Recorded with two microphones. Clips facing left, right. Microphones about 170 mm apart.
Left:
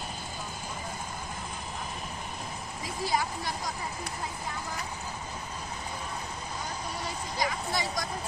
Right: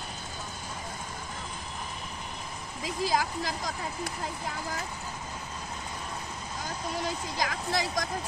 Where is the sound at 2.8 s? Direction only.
90° right.